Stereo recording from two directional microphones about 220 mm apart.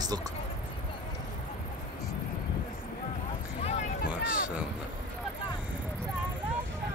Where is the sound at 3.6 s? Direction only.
30° left (ahead or behind).